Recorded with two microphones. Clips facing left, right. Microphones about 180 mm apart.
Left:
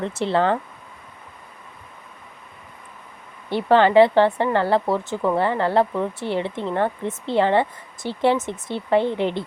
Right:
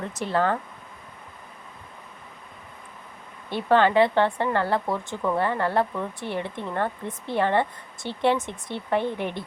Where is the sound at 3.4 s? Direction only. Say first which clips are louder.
Left 3 dB; 15° left (ahead or behind).